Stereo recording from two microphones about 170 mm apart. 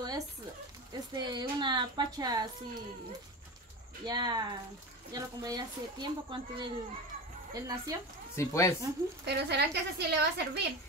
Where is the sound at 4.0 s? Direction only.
25° right (ahead or behind).